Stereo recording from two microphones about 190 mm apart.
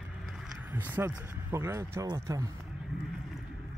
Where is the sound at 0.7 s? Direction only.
10° right (ahead or behind).